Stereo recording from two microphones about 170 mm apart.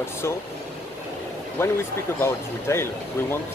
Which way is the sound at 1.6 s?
15° left (ahead or behind).